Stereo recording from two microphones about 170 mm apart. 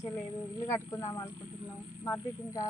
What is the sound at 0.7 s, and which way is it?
A woman's voice, 15° left (ahead or behind).